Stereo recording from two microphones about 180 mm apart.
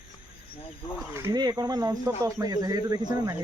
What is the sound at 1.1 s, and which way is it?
Speech, 20° right (ahead or behind).